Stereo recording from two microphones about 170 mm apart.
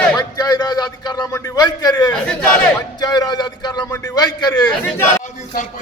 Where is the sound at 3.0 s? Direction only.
25° left (ahead or behind).